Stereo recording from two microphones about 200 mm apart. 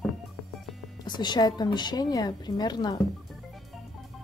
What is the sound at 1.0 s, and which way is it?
A woman's voice, 20° left (ahead or behind).